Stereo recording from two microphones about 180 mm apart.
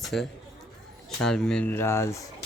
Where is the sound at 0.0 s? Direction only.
Centre (ahead or behind).